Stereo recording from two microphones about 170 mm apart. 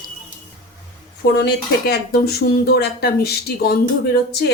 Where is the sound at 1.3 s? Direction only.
70° left (ahead or behind).